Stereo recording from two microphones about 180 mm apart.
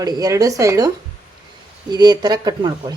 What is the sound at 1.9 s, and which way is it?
A woman's voice, 20° right (ahead or behind).